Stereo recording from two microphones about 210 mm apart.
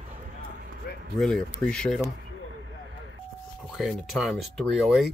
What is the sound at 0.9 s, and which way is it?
Run, 50° left (ahead or behind).